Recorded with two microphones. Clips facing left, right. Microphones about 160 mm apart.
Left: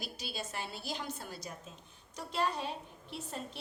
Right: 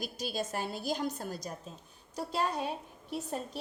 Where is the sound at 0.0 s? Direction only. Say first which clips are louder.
Right 7 dB; 45° right (ahead or behind).